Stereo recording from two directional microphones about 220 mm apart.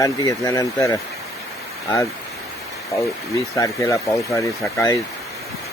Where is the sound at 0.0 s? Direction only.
15° left (ahead or behind).